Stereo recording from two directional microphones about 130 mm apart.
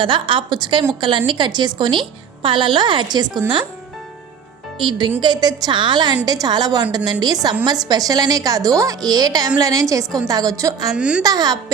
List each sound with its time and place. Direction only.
0.0 s a woman's voice: 40° right (ahead or behind)
4.8 s a woman's voice: 40° right (ahead or behind)
10.9 s a woman's voice: 10° right (ahead or behind)
11.2 s a woman's voice: 30° right (ahead or behind)